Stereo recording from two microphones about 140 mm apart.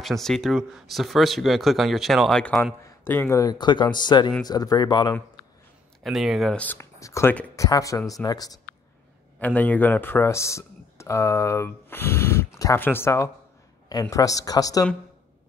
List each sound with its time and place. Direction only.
0.0 s speech: centre (ahead or behind)
2.6 s speech: 15° left (ahead or behind)
6.0 s speech: centre (ahead or behind)
6.6 s speech: 15° left (ahead or behind)
9.4 s speech: 10° left (ahead or behind); by 14.9 s 25° left (ahead or behind)